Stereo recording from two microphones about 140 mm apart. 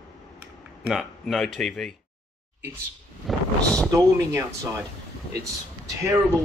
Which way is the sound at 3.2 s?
Centre (ahead or behind).